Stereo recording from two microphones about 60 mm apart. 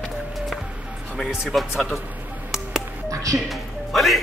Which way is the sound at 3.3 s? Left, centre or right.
Centre.